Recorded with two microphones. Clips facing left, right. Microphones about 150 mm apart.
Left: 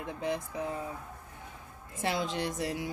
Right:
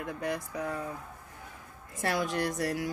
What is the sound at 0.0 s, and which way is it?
Speech, 20° left (ahead or behind).